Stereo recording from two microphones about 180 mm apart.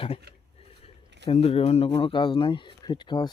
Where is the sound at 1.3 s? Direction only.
35° left (ahead or behind).